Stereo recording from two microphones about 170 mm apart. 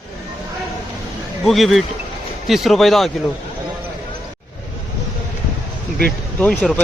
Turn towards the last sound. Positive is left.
turn(degrees=10)  # may be behind; listen again after turning